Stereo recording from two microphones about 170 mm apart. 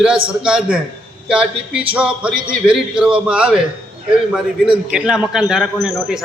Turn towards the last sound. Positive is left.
turn(degrees=-5)  # may be behind; listen again after turning